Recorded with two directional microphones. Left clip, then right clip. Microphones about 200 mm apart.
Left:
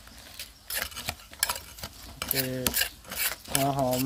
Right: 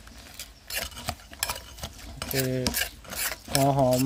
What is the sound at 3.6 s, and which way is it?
Speech, 20° right (ahead or behind).